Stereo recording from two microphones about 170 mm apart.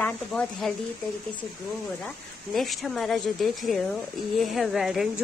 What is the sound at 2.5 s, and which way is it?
A woman's voice, centre (ahead or behind).